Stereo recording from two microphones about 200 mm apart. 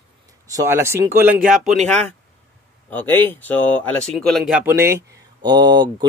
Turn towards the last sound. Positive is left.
turn(degrees=-20)  # may be behind; listen again after turning